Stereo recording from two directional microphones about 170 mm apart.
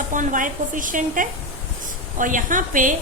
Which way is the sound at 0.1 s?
50° right (ahead or behind).